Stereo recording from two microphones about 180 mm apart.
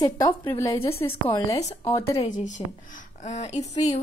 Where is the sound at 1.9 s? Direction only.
15° left (ahead or behind).